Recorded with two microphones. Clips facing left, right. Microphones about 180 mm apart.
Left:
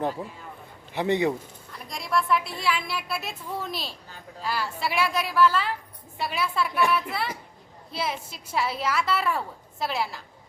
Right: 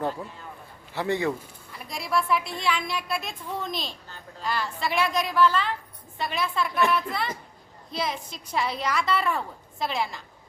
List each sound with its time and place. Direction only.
0.9 s speech: 20° left (ahead or behind)
1.7 s a woman's voice: centre (ahead or behind)